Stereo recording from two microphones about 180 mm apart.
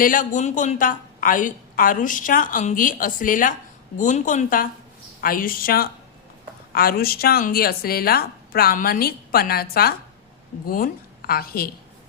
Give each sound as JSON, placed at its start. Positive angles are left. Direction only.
{"t": 0.0, "sound": "a woman's voice", "side_deg": 50}